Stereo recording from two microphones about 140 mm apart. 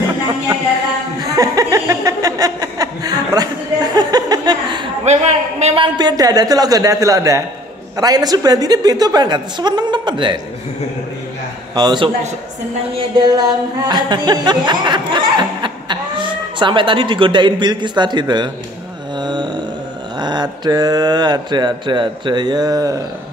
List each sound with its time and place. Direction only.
1.3 s chuckle: 25° right (ahead or behind)
5.1 s a sound: 50° right (ahead or behind)
5.9 s a woman's voice: 30° right (ahead or behind)
11.7 s speech: 30° right (ahead or behind)
19.1 s mantra: 30° right (ahead or behind)
20.2 s speech: 30° right (ahead or behind)